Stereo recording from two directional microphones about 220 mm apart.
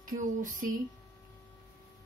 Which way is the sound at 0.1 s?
35° right (ahead or behind).